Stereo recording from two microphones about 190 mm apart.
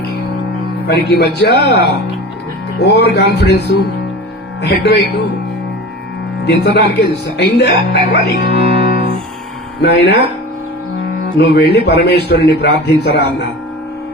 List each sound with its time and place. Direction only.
0.9 s a man's voice: 60° left (ahead or behind)
6.4 s a man's voice: 55° left (ahead or behind)
9.8 s a man's voice: 60° left (ahead or behind)
11.3 s a man's voice: 60° left (ahead or behind)